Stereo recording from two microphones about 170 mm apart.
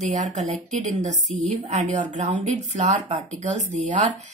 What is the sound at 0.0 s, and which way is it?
Speech, 45° right (ahead or behind).